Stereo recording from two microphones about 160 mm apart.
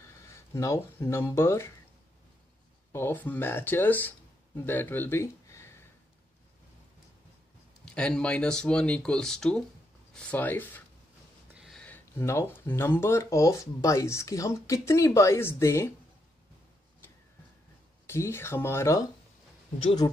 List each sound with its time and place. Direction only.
0.2 s speech: 20° left (ahead or behind)
2.9 s speech: 15° left (ahead or behind)
7.8 s speech: 5° left (ahead or behind)
11.5 s a sound: 5° right (ahead or behind)
11.8 s speech: 15° left (ahead or behind)
18.0 s speech: 15° left (ahead or behind)